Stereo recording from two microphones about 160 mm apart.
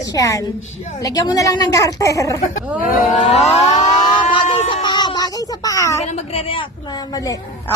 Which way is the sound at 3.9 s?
30° left (ahead or behind).